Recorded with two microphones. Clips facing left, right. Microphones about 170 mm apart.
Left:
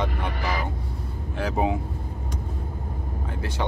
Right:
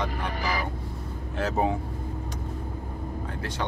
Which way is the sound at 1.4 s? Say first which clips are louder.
Left 1 dB; 15° left (ahead or behind).